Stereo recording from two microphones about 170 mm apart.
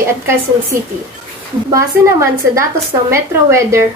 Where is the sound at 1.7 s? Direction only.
20° right (ahead or behind).